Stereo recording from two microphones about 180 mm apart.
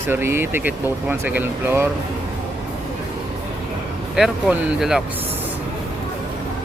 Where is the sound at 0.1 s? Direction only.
15° right (ahead or behind).